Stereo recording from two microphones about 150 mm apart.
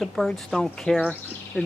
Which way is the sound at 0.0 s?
Centre (ahead or behind).